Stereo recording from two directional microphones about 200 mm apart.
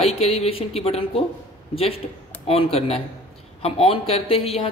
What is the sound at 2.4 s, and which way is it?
A woman's voice, 30° left (ahead or behind).